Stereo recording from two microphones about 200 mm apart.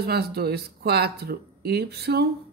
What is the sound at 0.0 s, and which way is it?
Speech, 50° right (ahead or behind).